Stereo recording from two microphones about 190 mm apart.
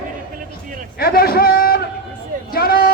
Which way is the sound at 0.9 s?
50° left (ahead or behind).